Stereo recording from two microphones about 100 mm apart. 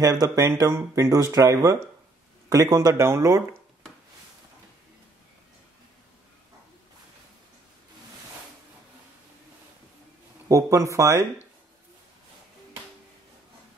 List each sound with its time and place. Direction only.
0.0 s speech: 35° right (ahead or behind)
10.5 s speech: 30° right (ahead or behind)